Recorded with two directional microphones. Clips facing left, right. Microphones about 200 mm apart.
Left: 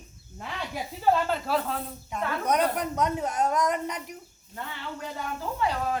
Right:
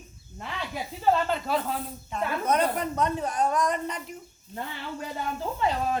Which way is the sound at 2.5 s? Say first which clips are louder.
Even; 15° left (ahead or behind).